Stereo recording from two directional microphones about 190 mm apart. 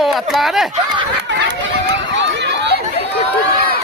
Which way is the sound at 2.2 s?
65° right (ahead or behind).